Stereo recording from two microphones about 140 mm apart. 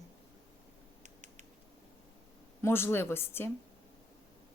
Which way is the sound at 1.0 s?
60° right (ahead or behind).